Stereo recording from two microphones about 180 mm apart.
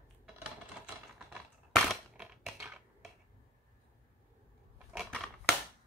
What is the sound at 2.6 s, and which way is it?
Dishes, centre (ahead or behind).